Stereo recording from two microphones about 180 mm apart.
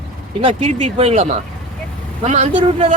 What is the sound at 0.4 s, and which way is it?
Speech, 30° right (ahead or behind).